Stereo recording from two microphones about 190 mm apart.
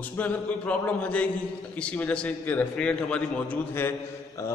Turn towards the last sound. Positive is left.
turn(degrees=15)  # may be behind; listen again after turning